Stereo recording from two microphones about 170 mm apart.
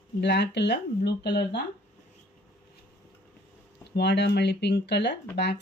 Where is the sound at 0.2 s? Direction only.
90° left.